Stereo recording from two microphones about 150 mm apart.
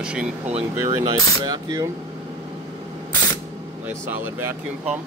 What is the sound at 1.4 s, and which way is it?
Speech, 25° right (ahead or behind).